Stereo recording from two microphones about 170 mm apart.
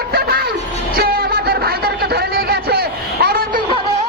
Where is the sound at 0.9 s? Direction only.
60° right (ahead or behind).